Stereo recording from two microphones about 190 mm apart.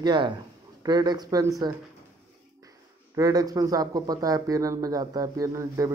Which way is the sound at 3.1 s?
20° right (ahead or behind).